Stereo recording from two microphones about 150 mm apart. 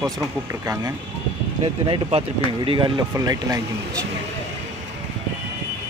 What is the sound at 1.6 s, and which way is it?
Speech, 35° right (ahead or behind).